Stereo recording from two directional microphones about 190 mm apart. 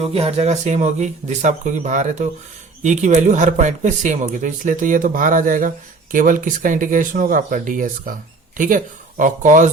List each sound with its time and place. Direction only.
0.1 s speech: 35° right (ahead or behind)